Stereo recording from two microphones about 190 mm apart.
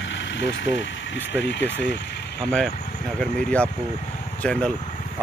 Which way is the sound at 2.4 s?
5° left (ahead or behind).